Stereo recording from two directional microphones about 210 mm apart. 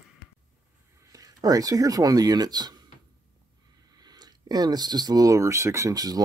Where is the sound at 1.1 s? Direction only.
15° right (ahead or behind).